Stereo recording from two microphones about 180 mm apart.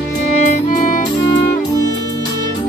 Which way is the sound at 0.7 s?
45° left (ahead or behind).